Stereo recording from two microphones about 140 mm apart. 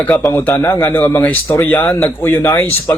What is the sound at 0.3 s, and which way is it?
Speech, 15° left (ahead or behind).